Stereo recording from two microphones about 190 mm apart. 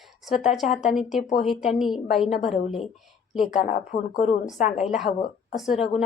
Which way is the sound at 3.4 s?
35° left (ahead or behind).